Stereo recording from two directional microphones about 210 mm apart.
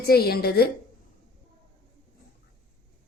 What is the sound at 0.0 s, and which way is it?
Speech, 45° left (ahead or behind).